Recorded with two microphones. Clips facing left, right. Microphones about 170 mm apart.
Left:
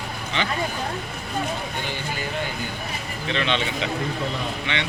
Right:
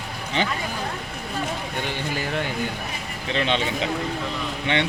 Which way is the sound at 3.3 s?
40° right (ahead or behind).